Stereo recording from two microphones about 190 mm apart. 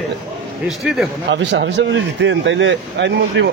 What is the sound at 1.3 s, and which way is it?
Speech, 70° right (ahead or behind).